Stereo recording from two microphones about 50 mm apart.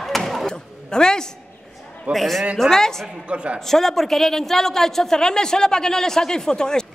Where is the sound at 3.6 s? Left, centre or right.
Centre.